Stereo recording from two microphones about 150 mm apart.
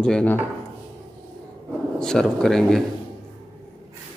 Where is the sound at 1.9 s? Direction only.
5° left (ahead or behind).